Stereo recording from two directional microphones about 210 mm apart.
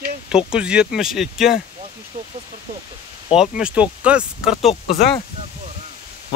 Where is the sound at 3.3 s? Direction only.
5° right (ahead or behind).